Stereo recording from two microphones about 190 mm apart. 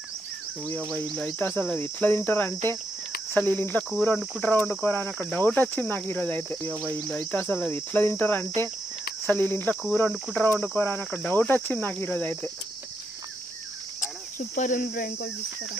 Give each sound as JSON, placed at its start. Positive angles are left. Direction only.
{"t": 0.7, "sound": "speech", "side_deg": 10}
{"t": 14.0, "sound": "cricket", "side_deg": 40}